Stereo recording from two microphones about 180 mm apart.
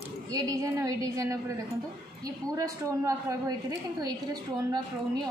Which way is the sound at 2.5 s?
20° right (ahead or behind).